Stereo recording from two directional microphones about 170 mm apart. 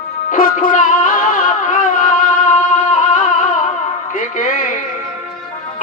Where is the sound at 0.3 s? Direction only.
55° left (ahead or behind).